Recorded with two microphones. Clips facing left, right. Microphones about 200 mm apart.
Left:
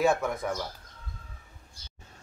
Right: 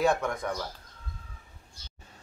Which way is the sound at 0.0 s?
5° left (ahead or behind).